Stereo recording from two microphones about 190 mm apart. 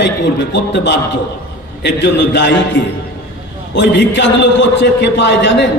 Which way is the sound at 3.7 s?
70° left (ahead or behind).